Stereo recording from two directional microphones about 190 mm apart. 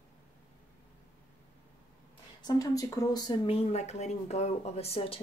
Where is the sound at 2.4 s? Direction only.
20° left (ahead or behind).